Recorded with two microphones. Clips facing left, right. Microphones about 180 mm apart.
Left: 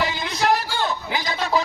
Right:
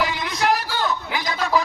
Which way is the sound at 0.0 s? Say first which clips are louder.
Even; 25° left (ahead or behind).